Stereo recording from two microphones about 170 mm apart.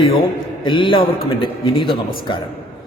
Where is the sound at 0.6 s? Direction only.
30° left (ahead or behind).